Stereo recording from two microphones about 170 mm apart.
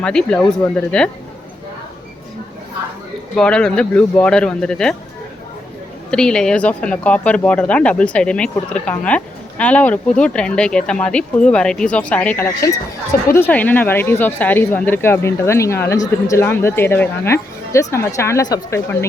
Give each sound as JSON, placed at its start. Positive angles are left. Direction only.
{"t": 0.0, "sound": "speech", "side_deg": 5}
{"t": 3.3, "sound": "speech", "side_deg": 5}
{"t": 6.1, "sound": "speech", "side_deg": 5}